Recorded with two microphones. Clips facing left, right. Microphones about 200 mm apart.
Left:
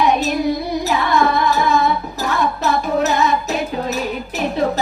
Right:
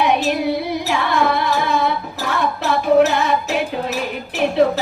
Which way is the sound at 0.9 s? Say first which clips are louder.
Left 2 dB; 40° left (ahead or behind).